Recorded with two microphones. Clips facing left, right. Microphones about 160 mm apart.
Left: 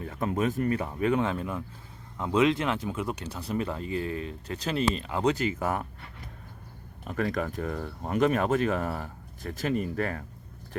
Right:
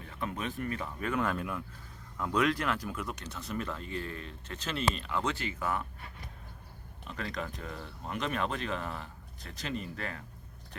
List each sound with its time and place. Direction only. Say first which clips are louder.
0.1 s speech: left 8 dB; 40° left (ahead or behind)
2.1 s speech: left 5 dB; 25° left (ahead or behind)
3.9 s speech: left 10 dB; 40° right (ahead or behind)
4.4 s speech: left 5 dB; 35° left (ahead or behind)
7.1 s speech: left 9 dB; 50° left (ahead or behind)